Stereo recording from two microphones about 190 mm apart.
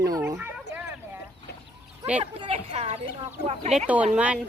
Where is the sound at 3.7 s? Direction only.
5° right (ahead or behind).